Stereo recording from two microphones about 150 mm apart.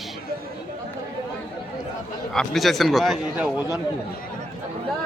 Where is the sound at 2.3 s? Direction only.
Centre (ahead or behind).